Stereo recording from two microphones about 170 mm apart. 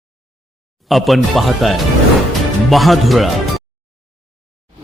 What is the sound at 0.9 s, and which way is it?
Speech, centre (ahead or behind).